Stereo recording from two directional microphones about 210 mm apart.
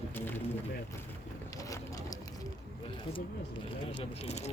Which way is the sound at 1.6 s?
15° left (ahead or behind).